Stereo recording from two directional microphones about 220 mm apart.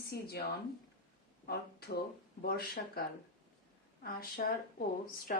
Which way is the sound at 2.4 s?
45° left (ahead or behind).